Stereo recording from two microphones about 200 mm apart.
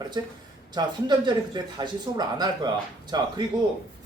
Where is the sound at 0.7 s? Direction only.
20° right (ahead or behind).